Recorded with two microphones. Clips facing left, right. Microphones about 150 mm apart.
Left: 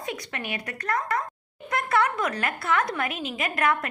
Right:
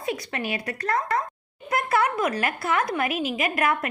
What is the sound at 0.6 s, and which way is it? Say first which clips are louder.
A woman's voice: right 3 dB; 35° right (ahead or behind).